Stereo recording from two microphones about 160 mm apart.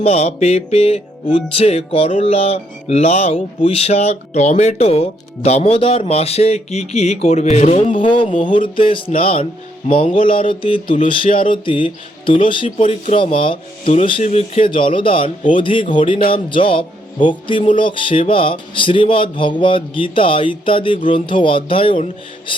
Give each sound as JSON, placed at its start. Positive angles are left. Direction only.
{"t": 0.0, "sound": "music", "side_deg": 40}
{"t": 8.0, "sound": "music", "side_deg": 30}